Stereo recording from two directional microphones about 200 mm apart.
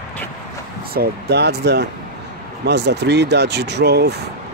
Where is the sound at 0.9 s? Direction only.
55° right (ahead or behind).